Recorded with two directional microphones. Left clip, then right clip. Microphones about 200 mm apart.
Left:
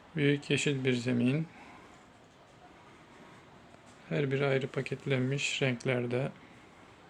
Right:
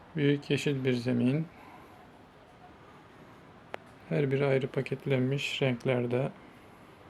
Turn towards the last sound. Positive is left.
turn(degrees=-5)  # may be behind; listen again after turning